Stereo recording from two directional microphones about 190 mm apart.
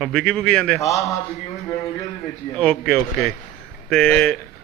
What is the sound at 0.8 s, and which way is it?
Speech, 15° left (ahead or behind).